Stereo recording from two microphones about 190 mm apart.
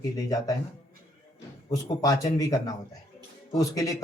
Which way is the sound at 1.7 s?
20° left (ahead or behind).